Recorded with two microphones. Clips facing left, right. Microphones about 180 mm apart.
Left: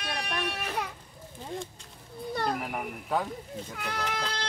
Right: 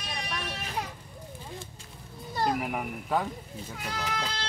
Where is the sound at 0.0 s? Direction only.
60° left (ahead or behind).